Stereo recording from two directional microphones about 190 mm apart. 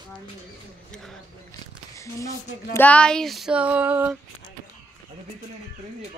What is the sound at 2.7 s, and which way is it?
Female singing, 5° left (ahead or behind).